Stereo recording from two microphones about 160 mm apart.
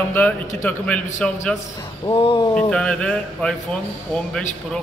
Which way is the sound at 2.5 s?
5° left (ahead or behind).